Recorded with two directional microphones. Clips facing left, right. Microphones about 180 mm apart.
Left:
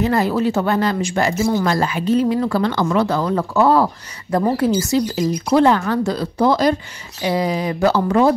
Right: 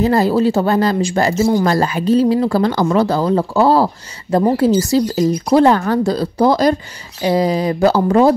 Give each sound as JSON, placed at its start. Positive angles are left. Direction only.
{"t": 0.0, "sound": "speech", "side_deg": -35}